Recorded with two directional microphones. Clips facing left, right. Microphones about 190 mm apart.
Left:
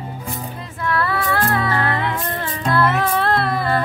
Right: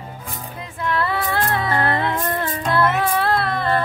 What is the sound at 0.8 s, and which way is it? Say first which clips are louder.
Female singing: left 1 dB; 20° right (ahead or behind).